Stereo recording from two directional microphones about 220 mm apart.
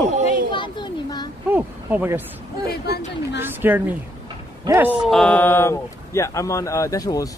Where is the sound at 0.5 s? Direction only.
20° left (ahead or behind).